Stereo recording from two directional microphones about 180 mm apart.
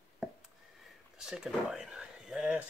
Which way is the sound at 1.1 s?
5° right (ahead or behind).